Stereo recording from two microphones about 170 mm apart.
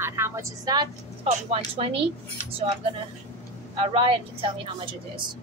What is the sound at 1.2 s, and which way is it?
Speech, 35° right (ahead or behind).